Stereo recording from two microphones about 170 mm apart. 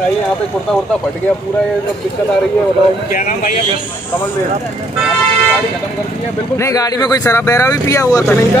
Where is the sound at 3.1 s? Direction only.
50° left (ahead or behind).